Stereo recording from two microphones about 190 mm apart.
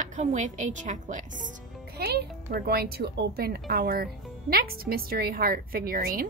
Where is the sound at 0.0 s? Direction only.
40° right (ahead or behind).